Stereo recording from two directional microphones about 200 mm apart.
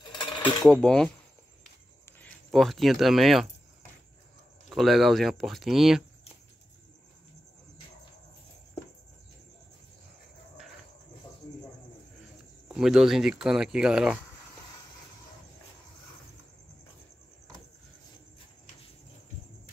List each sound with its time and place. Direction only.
0.0 s coin: 20° left (ahead or behind)
0.6 s speech: centre (ahead or behind)
2.2 s speech: centre (ahead or behind)
4.6 s speech: centre (ahead or behind)
12.6 s speech: 5° right (ahead or behind)